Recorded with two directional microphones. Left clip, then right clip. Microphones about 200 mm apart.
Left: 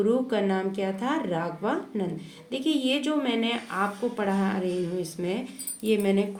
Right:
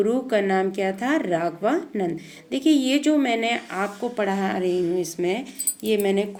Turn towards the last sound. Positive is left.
turn(degrees=-30)  # may be behind; listen again after turning